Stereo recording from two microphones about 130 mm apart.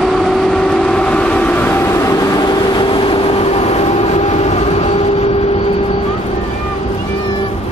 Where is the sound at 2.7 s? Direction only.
40° left (ahead or behind); by 5.0 s 55° left (ahead or behind).